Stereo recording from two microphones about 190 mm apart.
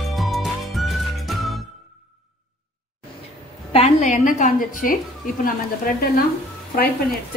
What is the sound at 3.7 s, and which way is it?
A woman's voice, 35° left (ahead or behind).